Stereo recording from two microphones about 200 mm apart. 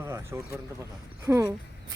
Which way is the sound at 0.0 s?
15° right (ahead or behind).